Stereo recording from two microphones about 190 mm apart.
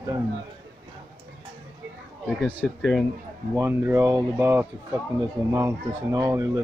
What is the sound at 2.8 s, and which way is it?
Speech, centre (ahead or behind).